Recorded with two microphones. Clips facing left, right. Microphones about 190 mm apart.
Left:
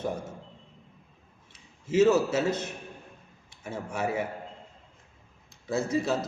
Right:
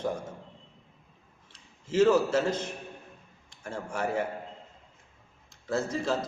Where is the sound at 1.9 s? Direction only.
10° left (ahead or behind).